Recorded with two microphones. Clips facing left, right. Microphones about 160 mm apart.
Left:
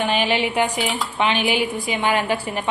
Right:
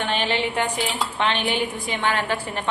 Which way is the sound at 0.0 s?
10° left (ahead or behind).